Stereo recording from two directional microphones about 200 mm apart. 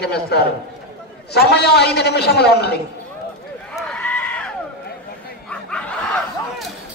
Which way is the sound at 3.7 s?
5° left (ahead or behind).